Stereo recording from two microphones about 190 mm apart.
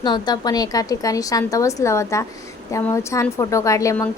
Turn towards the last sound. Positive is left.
turn(degrees=15)  # may be behind; listen again after turning